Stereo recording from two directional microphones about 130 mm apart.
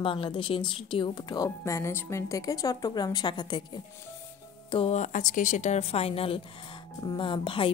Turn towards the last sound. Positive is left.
turn(degrees=40)  # may be behind; listen again after turning